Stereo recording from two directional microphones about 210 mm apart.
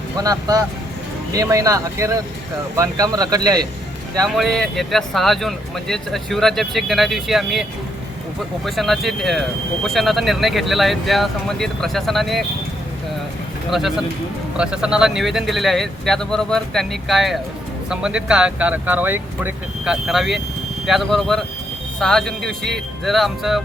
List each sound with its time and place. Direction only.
0.2 s speech: 15° right (ahead or behind)
4.4 s speech: centre (ahead or behind)
8.6 s speech: centre (ahead or behind)
13.7 s speech: centre (ahead or behind)